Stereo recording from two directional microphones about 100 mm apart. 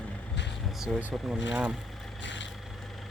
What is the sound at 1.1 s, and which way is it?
Speech, 5° right (ahead or behind).